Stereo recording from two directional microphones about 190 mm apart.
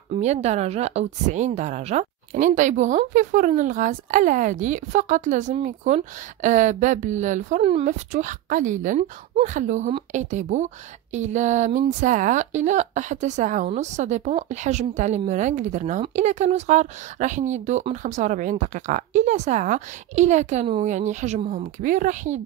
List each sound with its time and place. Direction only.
0.2 s a woman's voice: 35° right (ahead or behind)